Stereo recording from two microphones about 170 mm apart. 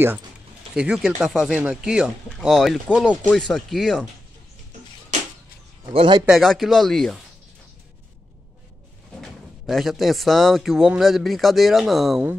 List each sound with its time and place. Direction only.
0.7 s a man's voice: 5° right (ahead or behind)
5.9 s speech: 25° right (ahead or behind)
6.2 s a man's voice: centre (ahead or behind)
9.2 s a man's voice: centre (ahead or behind)